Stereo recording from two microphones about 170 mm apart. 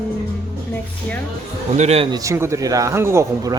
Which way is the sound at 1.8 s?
40° right (ahead or behind).